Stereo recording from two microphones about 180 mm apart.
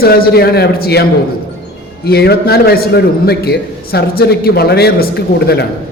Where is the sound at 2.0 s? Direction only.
60° left (ahead or behind).